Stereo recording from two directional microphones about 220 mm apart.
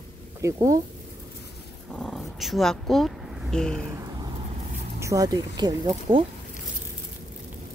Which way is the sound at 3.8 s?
15° right (ahead or behind).